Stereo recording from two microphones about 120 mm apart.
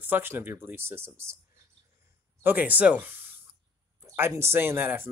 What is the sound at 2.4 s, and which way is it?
Speech, 15° right (ahead or behind).